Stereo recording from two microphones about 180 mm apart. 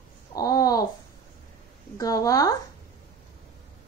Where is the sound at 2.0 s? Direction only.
20° left (ahead or behind).